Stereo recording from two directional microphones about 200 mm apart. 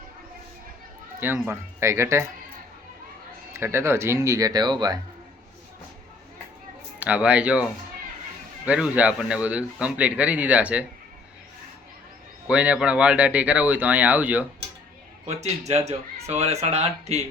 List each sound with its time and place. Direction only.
1.2 s a man's voice: 10° right (ahead or behind)
3.5 s a man's voice: 15° right (ahead or behind)
7.0 s a man's voice: 5° right (ahead or behind)
12.5 s a man's voice: 5° right (ahead or behind)
15.3 s speech: 35° right (ahead or behind)